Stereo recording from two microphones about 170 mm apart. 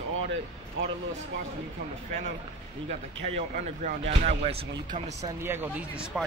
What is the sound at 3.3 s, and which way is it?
Speech, 45° right (ahead or behind).